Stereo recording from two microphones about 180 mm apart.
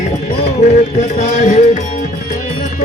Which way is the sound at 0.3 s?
40° left (ahead or behind).